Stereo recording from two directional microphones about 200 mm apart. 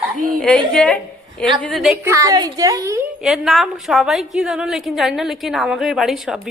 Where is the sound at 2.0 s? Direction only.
15° right (ahead or behind).